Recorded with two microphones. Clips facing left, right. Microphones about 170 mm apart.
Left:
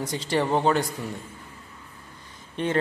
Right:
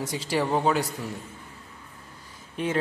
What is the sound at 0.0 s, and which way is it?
Speech, 10° right (ahead or behind).